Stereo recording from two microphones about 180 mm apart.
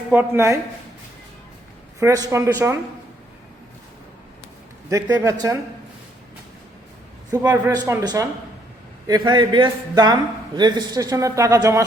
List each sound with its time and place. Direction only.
0.1 s speech: 15° right (ahead or behind)
2.0 s speech: 20° right (ahead or behind)
4.9 s speech: 15° right (ahead or behind)
7.3 s a man's voice: 15° right (ahead or behind)